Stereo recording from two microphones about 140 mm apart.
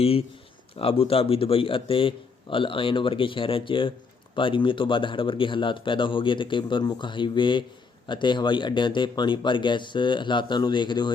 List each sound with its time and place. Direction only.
0.0 s speech: 45° left (ahead or behind)